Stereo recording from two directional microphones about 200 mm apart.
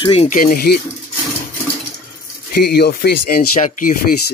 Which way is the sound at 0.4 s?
45° left (ahead or behind).